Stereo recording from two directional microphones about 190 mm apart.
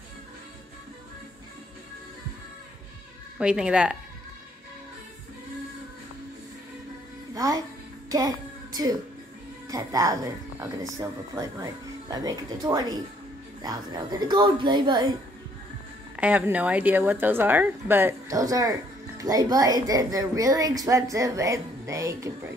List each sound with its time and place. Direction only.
3.3 s a woman's voice: 5° right (ahead or behind)
7.3 s speech: 20° right (ahead or behind)
8.1 s child singing: 20° right (ahead or behind)
9.7 s speech: 20° right (ahead or behind)
16.2 s a woman's voice: 5° right (ahead or behind)